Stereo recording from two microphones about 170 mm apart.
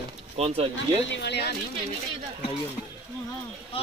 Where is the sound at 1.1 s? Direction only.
80° left.